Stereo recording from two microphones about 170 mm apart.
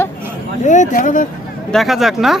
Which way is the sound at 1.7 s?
Centre (ahead or behind).